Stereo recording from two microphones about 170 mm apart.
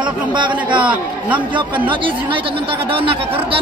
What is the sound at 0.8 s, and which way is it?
Speech, 10° right (ahead or behind).